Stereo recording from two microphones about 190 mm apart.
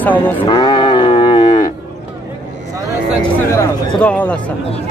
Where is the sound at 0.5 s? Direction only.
20° left (ahead or behind).